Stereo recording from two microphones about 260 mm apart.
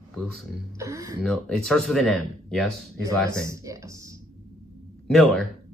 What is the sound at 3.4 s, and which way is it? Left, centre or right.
Speech, centre.